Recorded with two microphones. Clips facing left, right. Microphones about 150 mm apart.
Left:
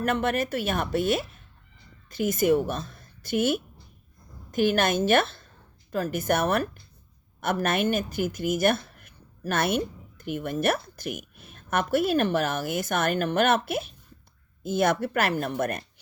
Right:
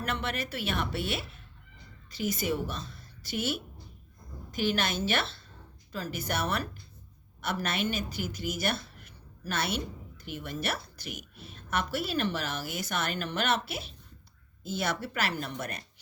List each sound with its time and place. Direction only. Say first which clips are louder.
0.0 s a woman's voice: left 8 dB; 50° left (ahead or behind)